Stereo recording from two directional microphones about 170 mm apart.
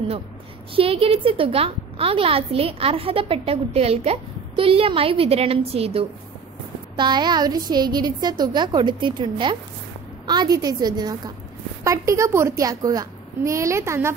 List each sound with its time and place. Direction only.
0.7 s a woman's voice: 35° right (ahead or behind); by 14.1 s 15° right (ahead or behind)